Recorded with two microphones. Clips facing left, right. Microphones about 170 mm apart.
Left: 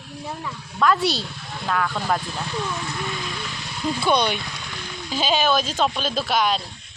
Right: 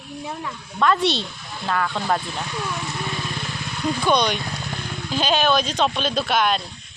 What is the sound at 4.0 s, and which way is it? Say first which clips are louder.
Speech: right 1 dB; 10° left (ahead or behind).